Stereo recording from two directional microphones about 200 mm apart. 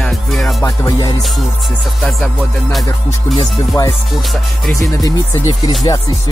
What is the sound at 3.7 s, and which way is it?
Music, 20° left (ahead or behind).